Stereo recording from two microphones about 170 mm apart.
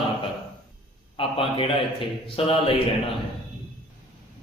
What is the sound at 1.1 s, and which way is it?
Speech, 30° left (ahead or behind).